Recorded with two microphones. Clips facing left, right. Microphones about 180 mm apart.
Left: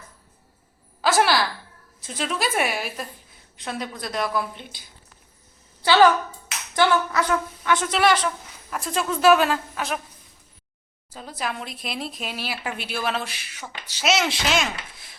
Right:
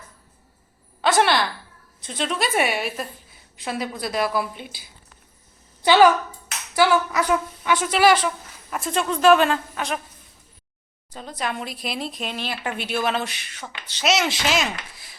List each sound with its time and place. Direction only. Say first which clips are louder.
1.0 s a woman's voice: right 1 dB; 5° left (ahead or behind)
5.8 s a woman's voice: right 1 dB; 15° right (ahead or behind)
7.9 s speech: right 5 dB; 5° right (ahead or behind)
11.1 s speech: right 2 dB; 5° left (ahead or behind)